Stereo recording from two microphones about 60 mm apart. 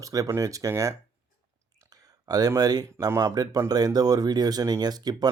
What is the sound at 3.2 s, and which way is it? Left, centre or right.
Speech, right.